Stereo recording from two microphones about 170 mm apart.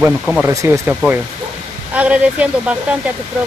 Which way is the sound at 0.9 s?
5° right (ahead or behind).